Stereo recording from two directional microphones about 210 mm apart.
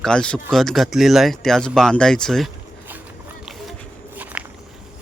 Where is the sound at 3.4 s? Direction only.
Centre (ahead or behind).